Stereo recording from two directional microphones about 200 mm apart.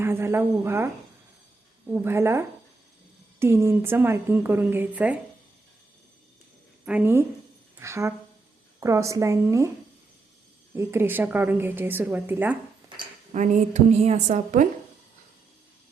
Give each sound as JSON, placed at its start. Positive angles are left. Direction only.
{"t": 0.0, "sound": "a woman's voice", "side_deg": -10}
{"t": 1.9, "sound": "a woman's voice", "side_deg": -10}
{"t": 3.4, "sound": "a woman's voice", "side_deg": -10}
{"t": 6.8, "sound": "a woman's voice", "side_deg": -10}
{"t": 10.8, "sound": "a woman's voice", "side_deg": -10}
{"t": 13.3, "sound": "a woman's voice", "side_deg": -40}